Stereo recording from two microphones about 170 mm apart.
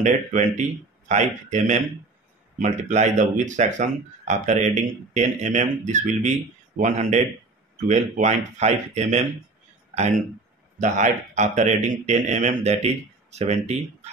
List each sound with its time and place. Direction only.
0.0 s speech: 45° right (ahead or behind)
10.8 s speech: 45° right (ahead or behind)